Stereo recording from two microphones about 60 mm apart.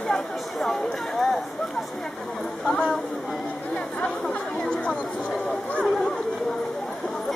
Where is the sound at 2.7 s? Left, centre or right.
Centre.